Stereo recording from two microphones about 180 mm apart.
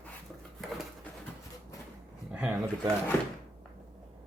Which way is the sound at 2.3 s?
Centre (ahead or behind).